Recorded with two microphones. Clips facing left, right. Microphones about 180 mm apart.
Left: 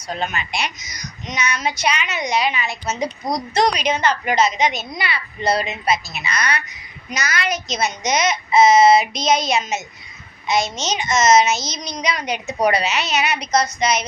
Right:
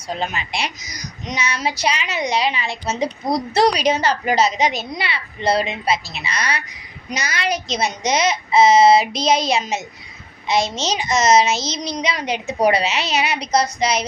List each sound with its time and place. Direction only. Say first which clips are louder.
0.1 s a child's voice: even; 30° right (ahead or behind)